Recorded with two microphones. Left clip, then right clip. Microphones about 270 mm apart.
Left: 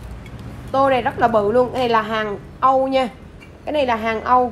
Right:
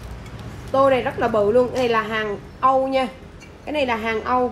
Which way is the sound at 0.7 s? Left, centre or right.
Centre.